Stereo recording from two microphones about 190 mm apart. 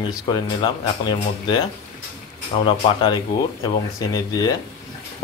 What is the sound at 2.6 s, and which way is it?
Speech, 25° left (ahead or behind).